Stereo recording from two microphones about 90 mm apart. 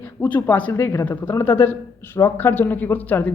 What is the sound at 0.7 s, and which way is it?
Speech, 30° left (ahead or behind).